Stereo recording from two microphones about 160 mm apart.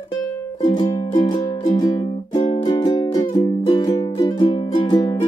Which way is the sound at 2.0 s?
40° left (ahead or behind).